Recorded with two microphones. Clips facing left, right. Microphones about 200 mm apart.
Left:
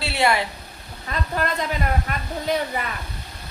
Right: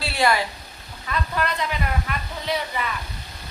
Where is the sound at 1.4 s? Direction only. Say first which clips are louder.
Left 2 dB; 45° left (ahead or behind).